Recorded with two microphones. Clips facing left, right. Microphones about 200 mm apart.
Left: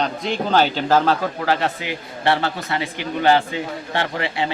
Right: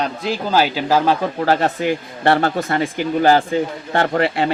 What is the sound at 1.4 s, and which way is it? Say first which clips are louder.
A man's voice: right 6 dB; 45° right (ahead or behind).